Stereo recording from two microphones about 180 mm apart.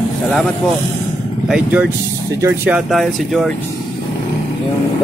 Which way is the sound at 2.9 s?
Centre (ahead or behind).